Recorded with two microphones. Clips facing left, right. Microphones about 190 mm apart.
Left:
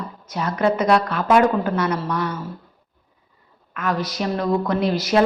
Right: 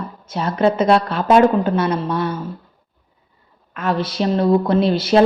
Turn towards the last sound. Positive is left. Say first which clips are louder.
# right 4 dB
turn(degrees=-30)  # may be behind; listen again after turning